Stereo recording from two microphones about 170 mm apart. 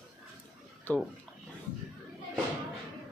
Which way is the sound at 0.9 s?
10° left (ahead or behind).